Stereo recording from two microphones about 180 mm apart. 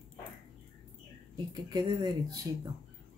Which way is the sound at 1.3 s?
25° right (ahead or behind).